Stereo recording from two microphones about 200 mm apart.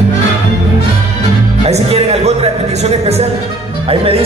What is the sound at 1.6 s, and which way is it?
Music, 30° right (ahead or behind).